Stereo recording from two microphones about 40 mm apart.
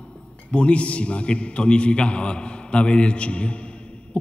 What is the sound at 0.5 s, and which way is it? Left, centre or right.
A man's voice, left.